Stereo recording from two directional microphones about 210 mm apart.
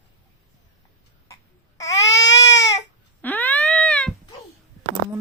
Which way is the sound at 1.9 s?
60° left (ahead or behind).